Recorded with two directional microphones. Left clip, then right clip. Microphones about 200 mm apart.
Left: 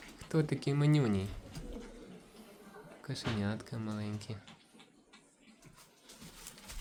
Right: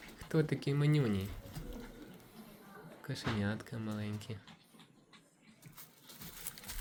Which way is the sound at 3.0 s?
5° left (ahead or behind).